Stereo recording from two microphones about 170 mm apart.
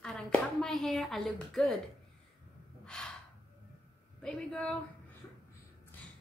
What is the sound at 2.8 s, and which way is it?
Gasp, 5° left (ahead or behind).